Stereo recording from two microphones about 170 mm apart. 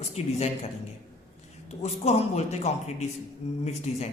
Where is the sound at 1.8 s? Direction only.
40° left (ahead or behind).